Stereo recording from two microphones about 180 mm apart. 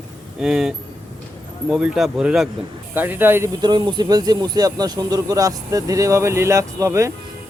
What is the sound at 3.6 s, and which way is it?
Speech, 25° right (ahead or behind).